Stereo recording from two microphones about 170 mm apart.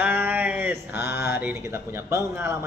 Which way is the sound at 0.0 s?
10° right (ahead or behind).